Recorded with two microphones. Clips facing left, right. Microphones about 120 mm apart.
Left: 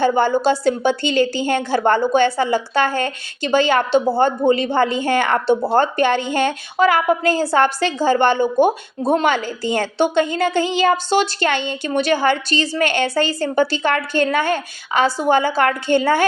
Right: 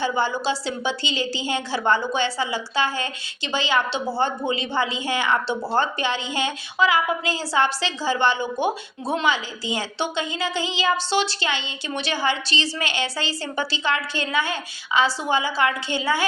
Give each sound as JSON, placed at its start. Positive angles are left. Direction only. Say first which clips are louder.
{"t": 0.0, "sound": "a woman's voice", "louder": "left 8 dB", "side_deg": 50}